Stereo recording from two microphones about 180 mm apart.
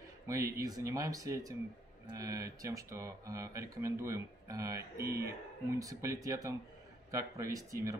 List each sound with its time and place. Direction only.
0.3 s speech: 20° right (ahead or behind)